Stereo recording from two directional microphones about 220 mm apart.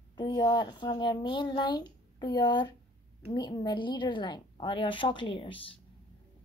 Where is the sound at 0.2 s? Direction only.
20° left (ahead or behind).